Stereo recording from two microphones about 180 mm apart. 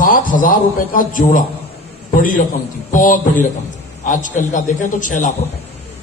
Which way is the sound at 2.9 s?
45° left (ahead or behind).